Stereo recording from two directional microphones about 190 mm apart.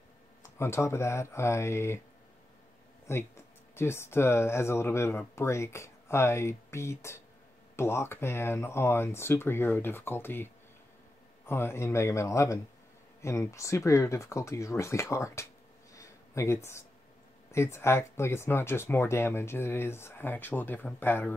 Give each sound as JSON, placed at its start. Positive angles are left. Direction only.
{"t": 0.4, "sound": "speech", "side_deg": 15}
{"t": 3.1, "sound": "speech", "side_deg": 15}
{"t": 15.9, "sound": "a sound", "side_deg": 15}
{"t": 17.5, "sound": "speech", "side_deg": 15}